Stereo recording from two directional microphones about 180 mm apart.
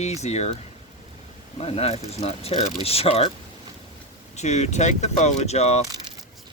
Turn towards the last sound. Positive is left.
turn(degrees=35)  # may be behind; listen again after turning